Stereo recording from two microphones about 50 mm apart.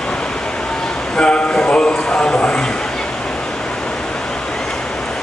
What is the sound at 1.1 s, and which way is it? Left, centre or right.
Speech, left.